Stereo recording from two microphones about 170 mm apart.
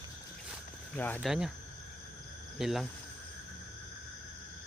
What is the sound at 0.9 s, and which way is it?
Speech, 10° left (ahead or behind).